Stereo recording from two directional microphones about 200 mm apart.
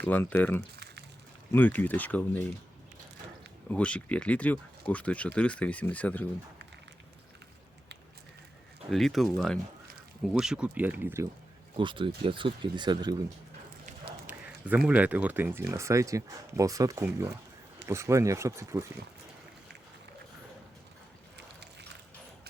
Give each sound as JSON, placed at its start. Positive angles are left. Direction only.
{"t": 0.0, "sound": "speech", "side_deg": 10}
{"t": 3.7, "sound": "speech", "side_deg": 5}
{"t": 8.9, "sound": "speech", "side_deg": 0}
{"t": 11.8, "sound": "speech", "side_deg": -25}
{"t": 14.3, "sound": "a sound", "side_deg": -10}
{"t": 14.8, "sound": "speech", "side_deg": -5}
{"t": 21.3, "sound": "a sound", "side_deg": -60}